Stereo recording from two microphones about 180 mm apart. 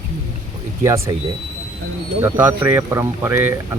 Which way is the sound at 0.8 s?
15° right (ahead or behind).